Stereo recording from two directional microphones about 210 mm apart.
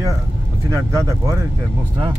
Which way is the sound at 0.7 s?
15° right (ahead or behind).